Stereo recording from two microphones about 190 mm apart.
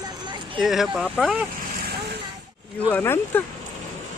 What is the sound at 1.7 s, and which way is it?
Vehicle, 55° right (ahead or behind).